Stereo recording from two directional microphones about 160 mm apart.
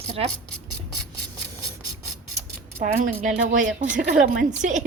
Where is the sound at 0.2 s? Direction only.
35° right (ahead or behind).